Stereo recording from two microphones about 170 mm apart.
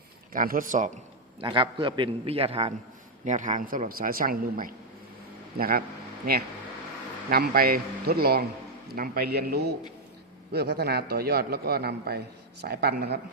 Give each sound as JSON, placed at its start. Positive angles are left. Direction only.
{"t": 0.3, "sound": "a man's voice", "side_deg": -55}
{"t": 1.4, "sound": "a man's voice", "side_deg": -30}
{"t": 3.2, "sound": "a man's voice", "side_deg": -45}
{"t": 7.3, "sound": "a man's voice", "side_deg": -65}